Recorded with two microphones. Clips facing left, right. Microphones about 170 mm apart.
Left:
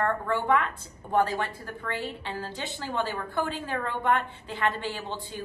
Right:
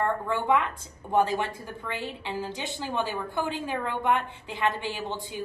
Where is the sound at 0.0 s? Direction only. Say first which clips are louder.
Even; 15° right (ahead or behind).